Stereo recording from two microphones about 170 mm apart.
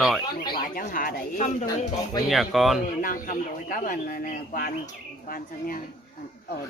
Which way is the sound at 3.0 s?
55° left (ahead or behind).